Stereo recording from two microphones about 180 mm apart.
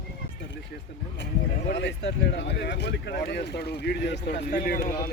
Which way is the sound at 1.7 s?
75° left (ahead or behind).